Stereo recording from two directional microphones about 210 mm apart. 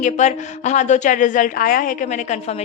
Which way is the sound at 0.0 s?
35° left (ahead or behind).